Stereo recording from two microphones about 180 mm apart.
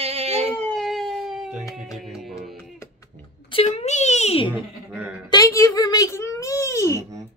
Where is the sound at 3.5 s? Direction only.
35° left (ahead or behind).